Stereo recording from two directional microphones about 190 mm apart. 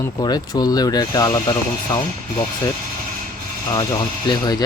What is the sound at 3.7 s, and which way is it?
Speech, 20° left (ahead or behind).